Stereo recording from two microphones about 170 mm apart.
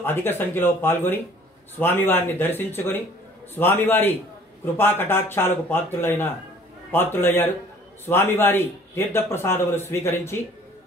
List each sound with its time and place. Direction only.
0.0 s a man's voice: 15° left (ahead or behind)